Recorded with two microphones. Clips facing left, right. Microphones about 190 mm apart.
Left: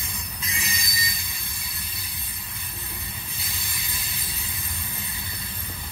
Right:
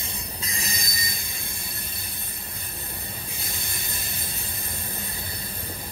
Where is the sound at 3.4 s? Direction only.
50° right (ahead or behind).